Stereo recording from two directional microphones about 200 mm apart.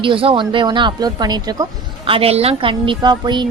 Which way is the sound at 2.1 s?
30° right (ahead or behind).